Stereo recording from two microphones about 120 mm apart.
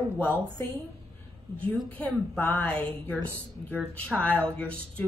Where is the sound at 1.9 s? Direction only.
10° left (ahead or behind).